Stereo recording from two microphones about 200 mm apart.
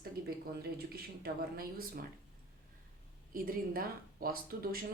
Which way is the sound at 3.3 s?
45° right (ahead or behind).